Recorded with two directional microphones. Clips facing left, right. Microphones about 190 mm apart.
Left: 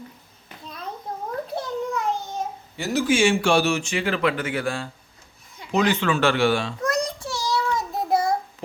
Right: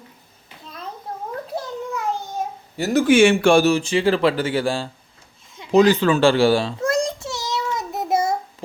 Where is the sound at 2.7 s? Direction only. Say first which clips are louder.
Right 6 dB; 45° right (ahead or behind); by 4.9 s 30° right (ahead or behind).